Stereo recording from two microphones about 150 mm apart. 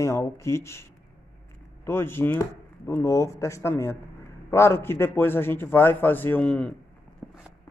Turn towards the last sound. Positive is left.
turn(degrees=-5)  # may be behind; listen again after turning